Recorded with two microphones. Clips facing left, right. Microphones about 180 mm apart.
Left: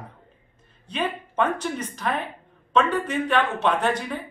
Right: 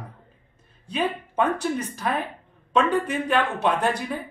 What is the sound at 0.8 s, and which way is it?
Speech, 10° right (ahead or behind).